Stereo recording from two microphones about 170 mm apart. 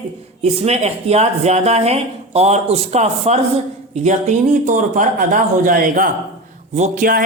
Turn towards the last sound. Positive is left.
turn(degrees=-55)  # may be behind; listen again after turning